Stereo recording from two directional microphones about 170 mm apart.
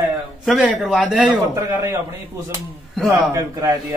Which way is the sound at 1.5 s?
15° right (ahead or behind).